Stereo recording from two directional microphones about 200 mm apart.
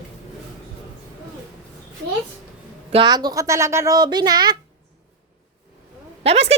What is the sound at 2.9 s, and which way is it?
Speech, 20° right (ahead or behind).